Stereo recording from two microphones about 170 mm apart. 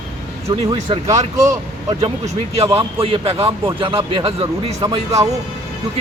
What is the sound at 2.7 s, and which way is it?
A man's voice, 35° right (ahead or behind).